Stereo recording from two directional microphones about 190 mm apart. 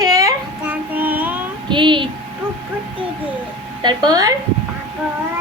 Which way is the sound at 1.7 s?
25° right (ahead or behind).